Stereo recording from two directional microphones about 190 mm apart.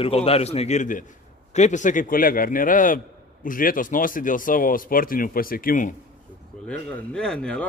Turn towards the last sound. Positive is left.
turn(degrees=5)  # may be behind; listen again after turning